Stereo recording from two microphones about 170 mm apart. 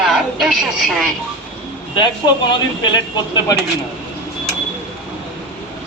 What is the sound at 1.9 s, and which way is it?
Speech, 25° left (ahead or behind).